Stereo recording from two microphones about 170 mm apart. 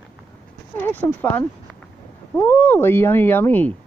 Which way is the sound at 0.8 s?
10° left (ahead or behind).